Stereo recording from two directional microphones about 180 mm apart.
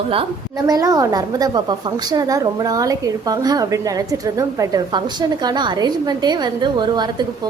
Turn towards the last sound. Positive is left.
turn(degrees=-25)  # may be behind; listen again after turning